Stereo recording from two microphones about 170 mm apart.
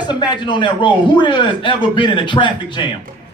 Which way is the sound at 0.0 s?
25° left (ahead or behind).